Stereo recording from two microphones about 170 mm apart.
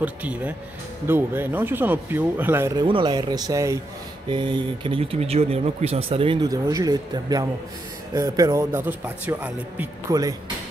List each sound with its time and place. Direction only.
0.0 s speech: 10° right (ahead or behind)
2.8 s speech: 25° right (ahead or behind)
4.3 s speech: 30° right (ahead or behind); by 9.8 s 10° right (ahead or behind)
10.1 s speech: 20° right (ahead or behind)